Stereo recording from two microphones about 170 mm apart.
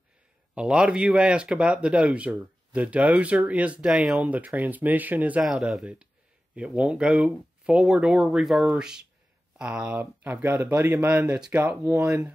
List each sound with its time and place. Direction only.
0.6 s speech: 5° right (ahead or behind)